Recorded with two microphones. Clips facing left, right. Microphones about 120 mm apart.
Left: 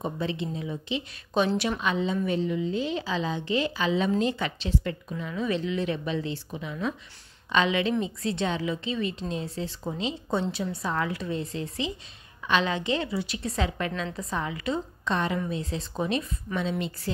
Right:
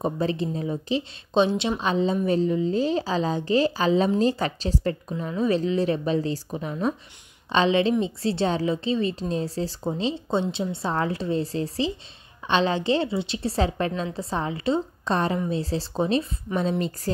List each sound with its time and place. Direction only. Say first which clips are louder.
0.0 s a woman's voice: right 5 dB; 40° right (ahead or behind)
1.3 s a woman's voice: right 4 dB; 25° right (ahead or behind); by 17.1 s 40° right (ahead or behind)